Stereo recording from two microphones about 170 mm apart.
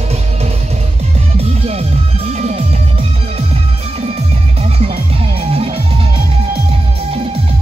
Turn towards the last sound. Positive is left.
turn(degrees=-35)  # may be behind; listen again after turning